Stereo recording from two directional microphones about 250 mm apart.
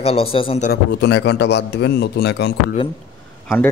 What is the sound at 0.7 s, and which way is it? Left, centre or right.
Speech, left.